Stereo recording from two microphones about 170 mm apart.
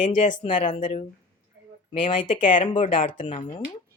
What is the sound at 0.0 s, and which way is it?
Speech, 50° left (ahead or behind).